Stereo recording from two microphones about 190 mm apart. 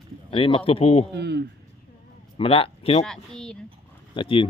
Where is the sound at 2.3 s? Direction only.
30° left (ahead or behind).